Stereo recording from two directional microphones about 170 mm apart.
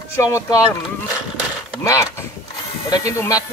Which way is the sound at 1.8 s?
15° left (ahead or behind).